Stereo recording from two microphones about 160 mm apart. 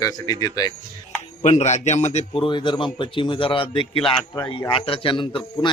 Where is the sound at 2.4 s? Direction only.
30° left (ahead or behind).